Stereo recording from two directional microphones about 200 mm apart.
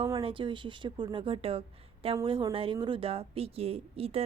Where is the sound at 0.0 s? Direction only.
25° right (ahead or behind).